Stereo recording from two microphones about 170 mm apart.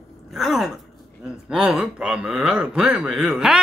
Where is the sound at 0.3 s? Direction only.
Centre (ahead or behind).